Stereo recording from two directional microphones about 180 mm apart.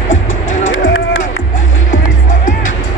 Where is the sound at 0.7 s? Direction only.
90° left.